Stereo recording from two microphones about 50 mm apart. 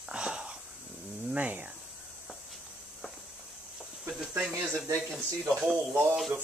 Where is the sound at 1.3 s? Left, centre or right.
Right.